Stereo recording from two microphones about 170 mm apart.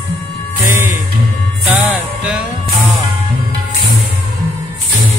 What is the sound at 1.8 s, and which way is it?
Music, 5° right (ahead or behind).